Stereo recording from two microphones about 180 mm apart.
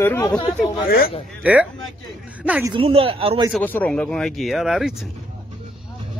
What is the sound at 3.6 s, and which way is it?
Speech, 10° left (ahead or behind).